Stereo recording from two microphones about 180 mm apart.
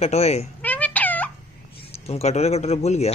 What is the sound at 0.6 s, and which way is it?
Cat, 10° left (ahead or behind).